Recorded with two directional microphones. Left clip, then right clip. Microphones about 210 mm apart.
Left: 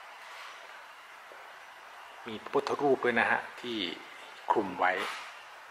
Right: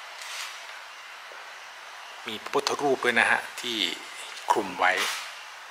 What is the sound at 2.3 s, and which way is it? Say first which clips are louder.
Speech: right 4 dB; 5° left (ahead or behind).